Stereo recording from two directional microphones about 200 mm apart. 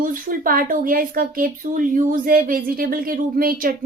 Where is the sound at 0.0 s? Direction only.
45° right (ahead or behind).